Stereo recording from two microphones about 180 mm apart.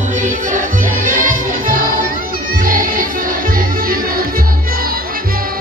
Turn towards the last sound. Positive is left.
turn(degrees=-55)  # may be behind; listen again after turning